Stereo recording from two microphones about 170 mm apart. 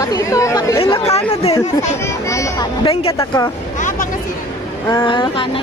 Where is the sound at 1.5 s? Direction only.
20° left (ahead or behind).